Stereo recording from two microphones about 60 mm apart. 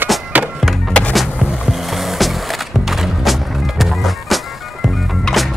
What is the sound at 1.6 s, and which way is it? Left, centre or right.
Skateboard, centre.